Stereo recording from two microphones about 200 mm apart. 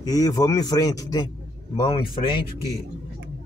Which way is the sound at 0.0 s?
20° left (ahead or behind).